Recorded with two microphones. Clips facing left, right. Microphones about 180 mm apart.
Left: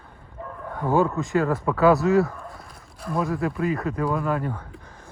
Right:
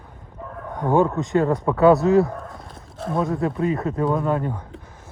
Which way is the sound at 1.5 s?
20° right (ahead or behind).